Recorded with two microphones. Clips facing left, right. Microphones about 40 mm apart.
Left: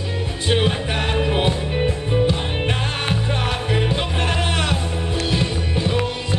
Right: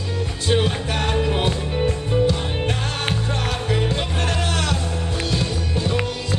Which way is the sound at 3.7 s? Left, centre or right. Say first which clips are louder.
Even; centre.